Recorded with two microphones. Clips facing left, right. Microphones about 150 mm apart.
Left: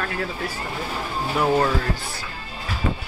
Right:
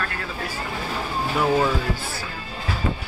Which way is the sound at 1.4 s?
Centre (ahead or behind).